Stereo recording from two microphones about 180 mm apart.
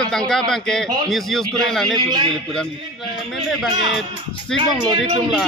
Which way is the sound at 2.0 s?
25° right (ahead or behind).